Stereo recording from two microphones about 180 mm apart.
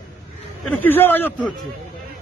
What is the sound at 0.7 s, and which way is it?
Speech, 10° left (ahead or behind).